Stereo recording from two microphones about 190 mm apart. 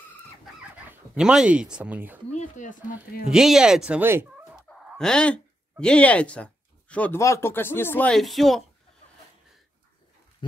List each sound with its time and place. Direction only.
0.7 s speech: 5° right (ahead or behind)
2.3 s speech: 40° left (ahead or behind)
3.3 s speech: 5° right (ahead or behind)
4.6 s speech: 5° left (ahead or behind)